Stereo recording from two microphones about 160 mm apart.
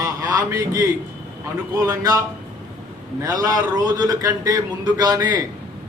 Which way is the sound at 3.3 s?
20° right (ahead or behind).